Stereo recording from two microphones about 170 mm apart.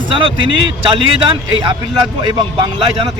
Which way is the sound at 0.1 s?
30° right (ahead or behind).